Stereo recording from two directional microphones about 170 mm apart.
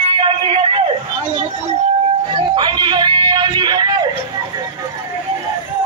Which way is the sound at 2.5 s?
25° right (ahead or behind).